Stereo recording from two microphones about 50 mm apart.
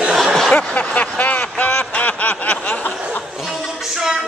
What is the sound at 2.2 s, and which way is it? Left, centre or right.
Snicker, left.